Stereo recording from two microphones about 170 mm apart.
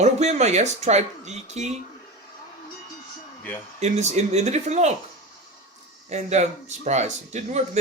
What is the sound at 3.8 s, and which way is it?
Speech, 40° right (ahead or behind).